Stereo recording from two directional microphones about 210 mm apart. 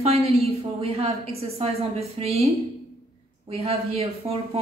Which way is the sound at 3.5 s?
30° right (ahead or behind).